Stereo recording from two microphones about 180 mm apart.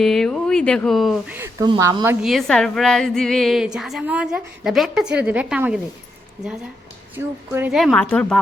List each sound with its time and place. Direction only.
0.0 s a woman's voice: centre (ahead or behind)
1.4 s speech: 15° right (ahead or behind)
2.2 s a woman's voice: centre (ahead or behind)
7.2 s a woman's voice: 10° right (ahead or behind)
7.8 s a woman's voice: 5° left (ahead or behind)